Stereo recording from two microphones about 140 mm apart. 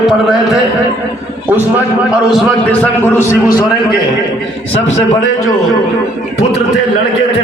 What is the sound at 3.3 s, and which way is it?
Speech, 25° left (ahead or behind).